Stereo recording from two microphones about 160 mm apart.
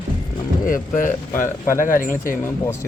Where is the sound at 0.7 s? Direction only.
60° left (ahead or behind).